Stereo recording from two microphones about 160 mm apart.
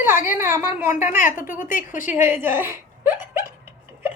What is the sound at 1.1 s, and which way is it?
Speech, 55° left (ahead or behind).